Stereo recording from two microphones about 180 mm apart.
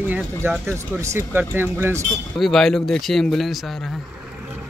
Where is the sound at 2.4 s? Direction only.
Centre (ahead or behind).